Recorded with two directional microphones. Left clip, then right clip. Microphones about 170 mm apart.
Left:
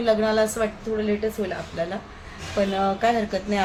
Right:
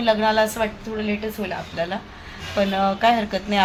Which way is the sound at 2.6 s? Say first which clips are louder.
Right 3 dB; 10° right (ahead or behind).